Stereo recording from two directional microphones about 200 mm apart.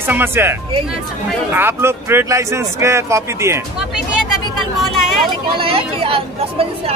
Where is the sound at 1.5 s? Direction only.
10° right (ahead or behind).